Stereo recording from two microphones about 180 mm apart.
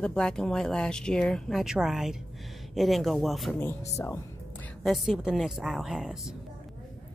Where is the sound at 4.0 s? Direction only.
20° left (ahead or behind).